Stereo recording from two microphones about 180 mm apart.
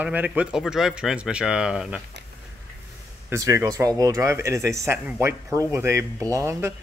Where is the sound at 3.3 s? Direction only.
15° right (ahead or behind).